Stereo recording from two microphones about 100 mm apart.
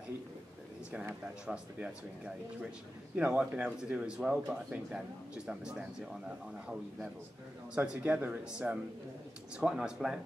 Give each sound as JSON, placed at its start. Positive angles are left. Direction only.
{"t": 0.9, "sound": "speech", "side_deg": -10}